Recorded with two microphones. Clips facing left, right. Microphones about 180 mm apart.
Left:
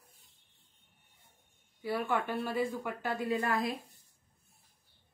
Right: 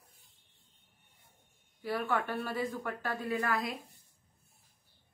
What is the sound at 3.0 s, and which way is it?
Speech, 20° left (ahead or behind).